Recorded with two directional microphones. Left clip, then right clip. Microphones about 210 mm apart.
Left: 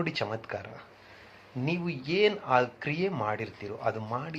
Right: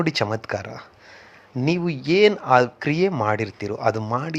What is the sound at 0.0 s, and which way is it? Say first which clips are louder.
Speech: right 9 dB; 45° right (ahead or behind).